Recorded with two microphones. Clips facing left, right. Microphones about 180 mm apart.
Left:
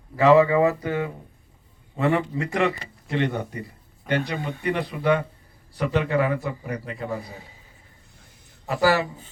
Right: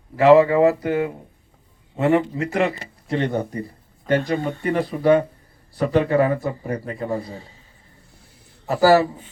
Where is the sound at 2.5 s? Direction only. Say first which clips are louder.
Right 1 dB; 40° right (ahead or behind).